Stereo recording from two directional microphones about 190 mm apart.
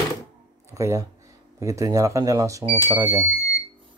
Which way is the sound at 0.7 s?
15° right (ahead or behind).